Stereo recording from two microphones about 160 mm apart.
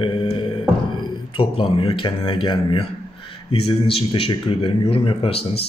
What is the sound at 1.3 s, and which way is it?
A man's voice, 35° left (ahead or behind).